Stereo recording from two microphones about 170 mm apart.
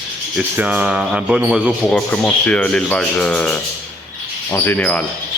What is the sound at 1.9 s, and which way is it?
Speech, 10° left (ahead or behind).